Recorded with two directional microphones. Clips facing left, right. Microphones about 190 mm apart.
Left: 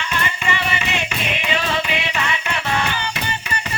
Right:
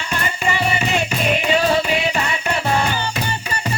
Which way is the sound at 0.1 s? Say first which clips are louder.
Right 3 dB; 40° right (ahead or behind).